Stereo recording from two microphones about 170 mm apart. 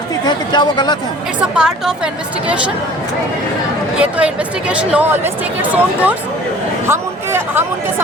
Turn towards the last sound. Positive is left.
turn(degrees=-15)  # may be behind; listen again after turning